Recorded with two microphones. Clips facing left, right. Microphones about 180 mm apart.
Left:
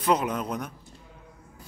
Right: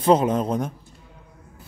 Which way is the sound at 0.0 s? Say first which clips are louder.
Right 7 dB; 30° right (ahead or behind).